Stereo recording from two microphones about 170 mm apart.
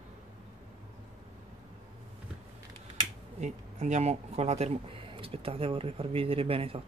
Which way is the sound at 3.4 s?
45° right (ahead or behind).